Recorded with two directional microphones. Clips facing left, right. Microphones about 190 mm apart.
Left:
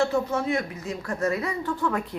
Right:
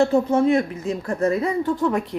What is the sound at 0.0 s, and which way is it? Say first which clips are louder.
Speech: right 7 dB; 30° right (ahead or behind).